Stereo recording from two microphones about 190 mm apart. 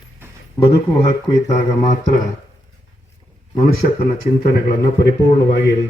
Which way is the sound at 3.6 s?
50° left (ahead or behind).